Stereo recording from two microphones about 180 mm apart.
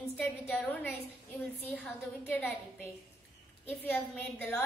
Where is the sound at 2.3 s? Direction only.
10° left (ahead or behind).